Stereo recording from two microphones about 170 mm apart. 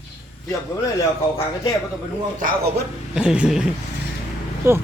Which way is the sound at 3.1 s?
5° right (ahead or behind).